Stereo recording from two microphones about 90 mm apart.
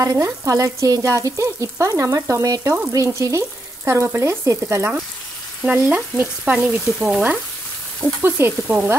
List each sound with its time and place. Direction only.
0.0 s speech: 40° right (ahead or behind)
5.7 s frying: 15° right (ahead or behind)
6.8 s frying: 5° right (ahead or behind)
8.0 s sizzle: 25° right (ahead or behind)